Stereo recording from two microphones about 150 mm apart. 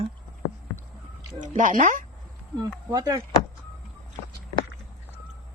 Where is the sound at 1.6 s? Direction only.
60° right (ahead or behind).